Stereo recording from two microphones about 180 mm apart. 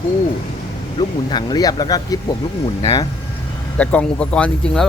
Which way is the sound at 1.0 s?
25° left (ahead or behind).